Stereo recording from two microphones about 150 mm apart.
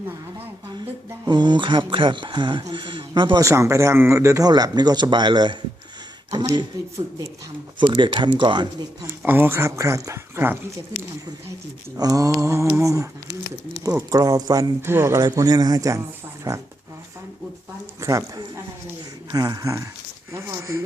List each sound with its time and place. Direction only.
1.2 s speech: 30° right (ahead or behind)
3.4 s a man's voice: 20° right (ahead or behind)
9.2 s speech: 15° right (ahead or behind)
11.9 s a man's voice: 25° right (ahead or behind)
14.1 s a man's voice: 25° right (ahead or behind)
18.0 s a sound: 20° right (ahead or behind)
19.3 s a man's voice: 25° right (ahead or behind)